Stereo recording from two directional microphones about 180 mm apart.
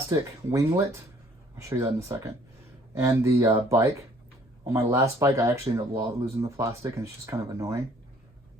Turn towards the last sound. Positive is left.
turn(degrees=-15)  # may be behind; listen again after turning